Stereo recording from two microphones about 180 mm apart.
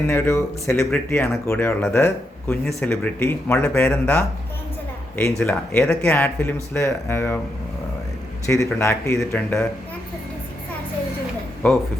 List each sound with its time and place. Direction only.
0.1 s speech: 15° left (ahead or behind)
5.4 s speech: 10° left (ahead or behind)
8.4 s speech: 15° left (ahead or behind)